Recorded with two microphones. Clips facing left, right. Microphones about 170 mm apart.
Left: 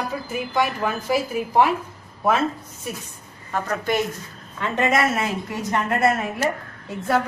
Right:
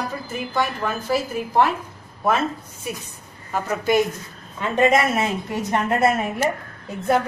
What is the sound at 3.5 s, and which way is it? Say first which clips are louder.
Speech: right 2 dB; 5° right (ahead or behind).